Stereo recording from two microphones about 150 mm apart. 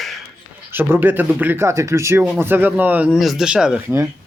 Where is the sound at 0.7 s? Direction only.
15° right (ahead or behind).